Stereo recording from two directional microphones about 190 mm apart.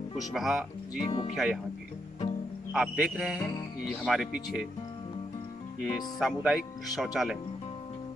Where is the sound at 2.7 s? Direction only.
5° right (ahead or behind).